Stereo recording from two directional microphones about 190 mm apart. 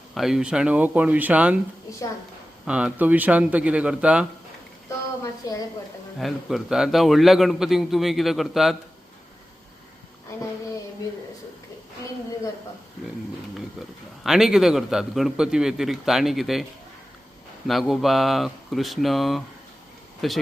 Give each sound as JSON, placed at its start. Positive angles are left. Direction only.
{"t": 0.1, "sound": "a man's voice", "side_deg": 0}
{"t": 2.6, "sound": "a man's voice", "side_deg": -5}
{"t": 5.2, "sound": "a woman's voice", "side_deg": 20}
{"t": 6.1, "sound": "a man's voice", "side_deg": 0}
{"t": 14.3, "sound": "a man's voice", "side_deg": -5}
{"t": 17.7, "sound": "a man's voice", "side_deg": 0}